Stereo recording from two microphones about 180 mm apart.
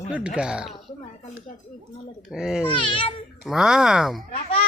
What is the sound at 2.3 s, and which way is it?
Speech, 5° right (ahead or behind).